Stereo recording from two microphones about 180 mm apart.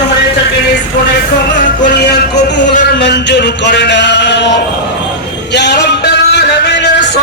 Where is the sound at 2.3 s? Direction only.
75° left (ahead or behind).